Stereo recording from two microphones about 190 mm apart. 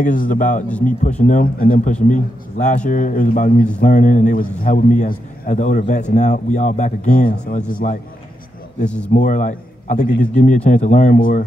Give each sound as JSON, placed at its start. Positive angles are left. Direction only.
{"t": 0.0, "sound": "a man's voice", "side_deg": 45}
{"t": 9.1, "sound": "a man's voice", "side_deg": 40}